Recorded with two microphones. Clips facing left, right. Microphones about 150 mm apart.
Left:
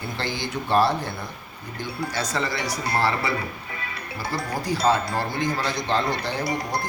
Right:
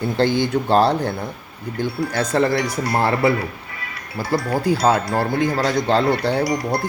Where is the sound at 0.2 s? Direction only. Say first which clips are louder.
Right 13 dB; 55° right (ahead or behind).